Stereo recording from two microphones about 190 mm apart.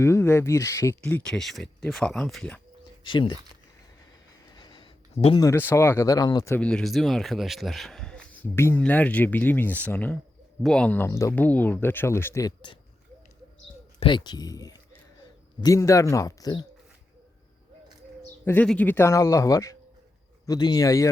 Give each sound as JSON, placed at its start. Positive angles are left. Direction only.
{"t": 0.0, "sound": "speech", "side_deg": 15}
{"t": 3.0, "sound": "speech", "side_deg": 25}
{"t": 4.5, "sound": "a sound", "side_deg": 25}
{"t": 5.4, "sound": "speech", "side_deg": 15}
{"t": 14.0, "sound": "speech", "side_deg": 25}
{"t": 18.4, "sound": "speech", "side_deg": 10}